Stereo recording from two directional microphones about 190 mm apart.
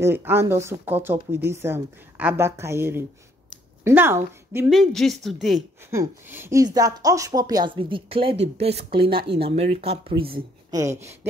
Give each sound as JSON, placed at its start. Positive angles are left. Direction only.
{"t": 0.0, "sound": "a woman's voice", "side_deg": -10}
{"t": 4.6, "sound": "speech", "side_deg": 0}
{"t": 5.9, "sound": "a woman's voice", "side_deg": -15}
{"t": 10.7, "sound": "speech", "side_deg": -15}